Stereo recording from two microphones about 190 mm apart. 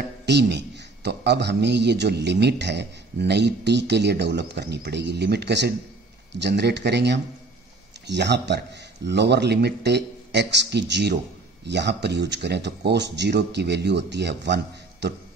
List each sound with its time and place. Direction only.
0.2 s a man's voice: 60° right (ahead or behind)